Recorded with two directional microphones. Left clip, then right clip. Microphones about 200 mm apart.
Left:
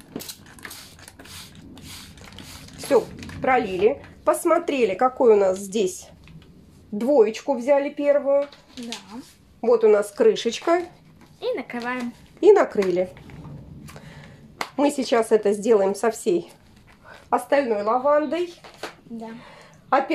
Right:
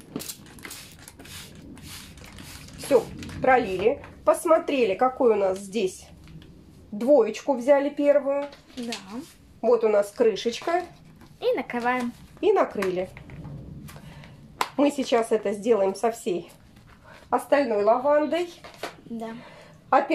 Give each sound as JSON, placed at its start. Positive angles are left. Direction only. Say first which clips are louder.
{"t": 2.9, "sound": "speech", "louder": "left 2 dB", "side_deg": 30}
{"t": 9.6, "sound": "speech", "louder": "left 3 dB", "side_deg": 35}
{"t": 11.3, "sound": "speech", "louder": "right 2 dB", "side_deg": -15}
{"t": 12.4, "sound": "speech", "louder": "left 6 dB", "side_deg": 45}
{"t": 14.8, "sound": "speech", "louder": "left 2 dB", "side_deg": 45}